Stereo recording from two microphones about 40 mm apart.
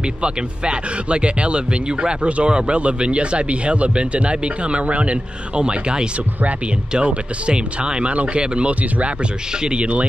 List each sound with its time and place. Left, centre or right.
0.2 s speech: right